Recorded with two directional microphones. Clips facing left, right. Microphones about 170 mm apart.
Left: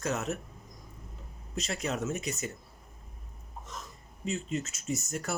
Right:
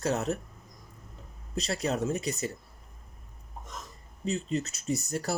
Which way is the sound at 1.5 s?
35° right (ahead or behind).